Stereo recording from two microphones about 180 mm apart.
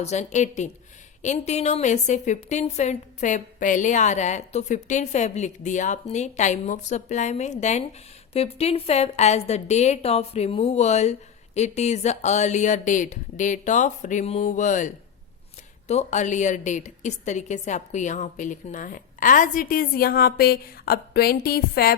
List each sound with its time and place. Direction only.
0.0 s a woman's voice: 40° left (ahead or behind); by 21.9 s 60° left (ahead or behind)